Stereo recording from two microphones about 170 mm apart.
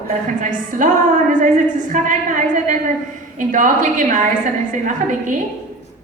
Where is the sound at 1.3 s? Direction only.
45° right (ahead or behind).